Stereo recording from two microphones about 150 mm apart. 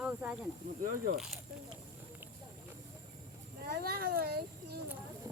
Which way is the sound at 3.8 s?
90° right.